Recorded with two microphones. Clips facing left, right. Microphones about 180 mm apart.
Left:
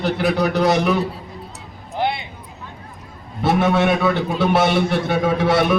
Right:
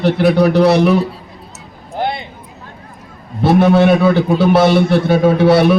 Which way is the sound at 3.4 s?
35° right (ahead or behind).